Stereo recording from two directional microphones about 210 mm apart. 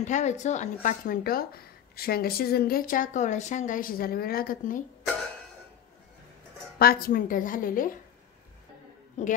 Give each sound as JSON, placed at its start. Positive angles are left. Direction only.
{"t": 0.0, "sound": "speech", "side_deg": 35}
{"t": 6.8, "sound": "a woman's voice", "side_deg": 45}
{"t": 9.2, "sound": "a woman's voice", "side_deg": 35}